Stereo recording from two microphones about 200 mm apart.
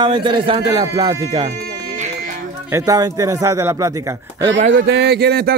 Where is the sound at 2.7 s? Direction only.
15° right (ahead or behind).